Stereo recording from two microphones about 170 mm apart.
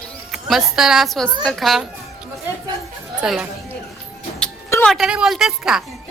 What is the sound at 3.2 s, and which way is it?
Speech, 5° right (ahead or behind).